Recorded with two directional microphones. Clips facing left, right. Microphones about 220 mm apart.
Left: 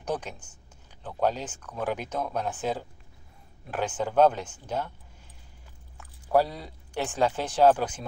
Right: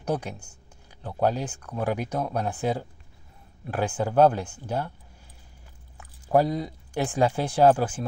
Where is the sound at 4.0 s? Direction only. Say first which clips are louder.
Right 2 dB; 10° right (ahead or behind).